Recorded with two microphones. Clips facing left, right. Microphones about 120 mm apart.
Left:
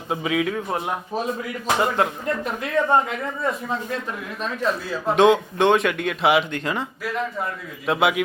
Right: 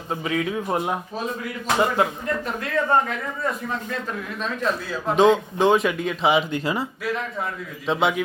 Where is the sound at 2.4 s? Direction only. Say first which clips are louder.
Left 3 dB; 15° left (ahead or behind).